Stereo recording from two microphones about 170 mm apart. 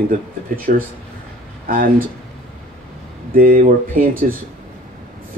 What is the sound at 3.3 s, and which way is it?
Speech, 55° right (ahead or behind).